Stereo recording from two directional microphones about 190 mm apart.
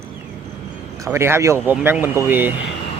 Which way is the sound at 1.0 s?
15° right (ahead or behind).